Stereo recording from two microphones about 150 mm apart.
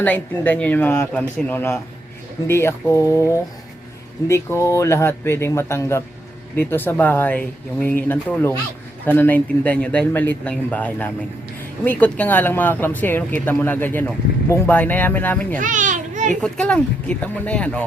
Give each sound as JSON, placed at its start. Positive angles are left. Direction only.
{"t": 0.0, "sound": "speech", "side_deg": 10}
{"t": 15.5, "sound": "children playing", "side_deg": -60}
{"t": 16.3, "sound": "speech", "side_deg": 5}